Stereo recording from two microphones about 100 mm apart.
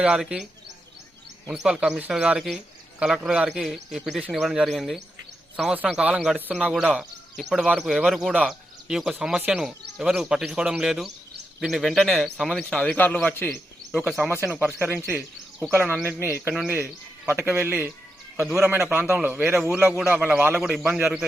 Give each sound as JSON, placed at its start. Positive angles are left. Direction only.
{"t": 0.0, "sound": "speech", "side_deg": -10}
{"t": 1.5, "sound": "a man's voice", "side_deg": -5}
{"t": 7.3, "sound": "a man's voice", "side_deg": 0}
{"t": 8.4, "sound": "bird", "side_deg": -5}
{"t": 9.1, "sound": "a man's voice", "side_deg": -5}
{"t": 12.7, "sound": "a man's voice", "side_deg": 15}
{"t": 14.4, "sound": "a man's voice", "side_deg": -20}